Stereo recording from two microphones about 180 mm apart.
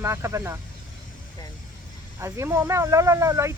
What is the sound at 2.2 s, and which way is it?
Speech, 15° right (ahead or behind).